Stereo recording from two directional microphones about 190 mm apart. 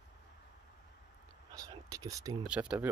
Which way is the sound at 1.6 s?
20° right (ahead or behind).